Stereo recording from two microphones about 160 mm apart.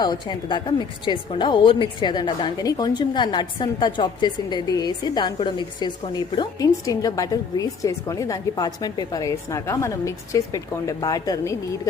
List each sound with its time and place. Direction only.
0.0 s a woman's voice: 25° left (ahead or behind)